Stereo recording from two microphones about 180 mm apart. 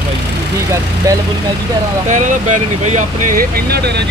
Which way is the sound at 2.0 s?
45° right (ahead or behind).